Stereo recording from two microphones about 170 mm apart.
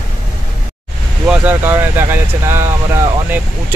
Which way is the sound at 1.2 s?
10° right (ahead or behind).